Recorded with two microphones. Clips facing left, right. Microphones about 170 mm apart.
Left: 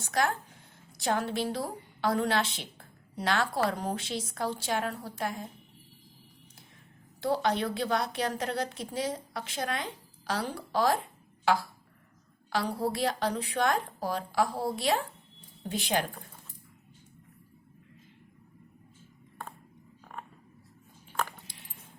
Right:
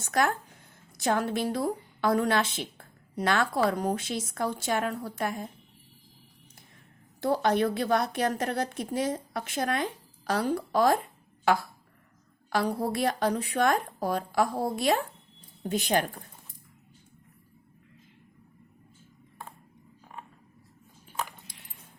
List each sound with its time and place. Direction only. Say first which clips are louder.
0.0 s a woman's voice: right 2 dB; 50° right (ahead or behind)
7.2 s a woman's voice: right 3 dB; 50° right (ahead or behind)
12.5 s a woman's voice: right 2 dB; 50° right (ahead or behind)